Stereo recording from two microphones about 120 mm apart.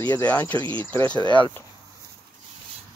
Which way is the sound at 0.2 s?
15° left (ahead or behind).